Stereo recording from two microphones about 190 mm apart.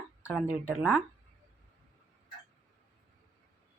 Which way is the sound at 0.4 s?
10° right (ahead or behind).